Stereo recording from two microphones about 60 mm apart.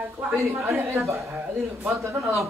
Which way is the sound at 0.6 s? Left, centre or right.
Right.